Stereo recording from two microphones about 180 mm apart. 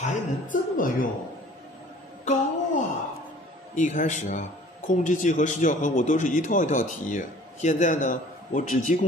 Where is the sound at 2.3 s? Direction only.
40° left (ahead or behind).